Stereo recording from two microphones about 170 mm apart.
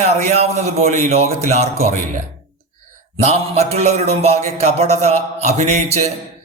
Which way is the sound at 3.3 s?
40° right (ahead or behind).